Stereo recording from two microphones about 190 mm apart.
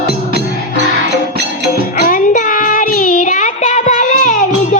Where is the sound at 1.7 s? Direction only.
50° left (ahead or behind).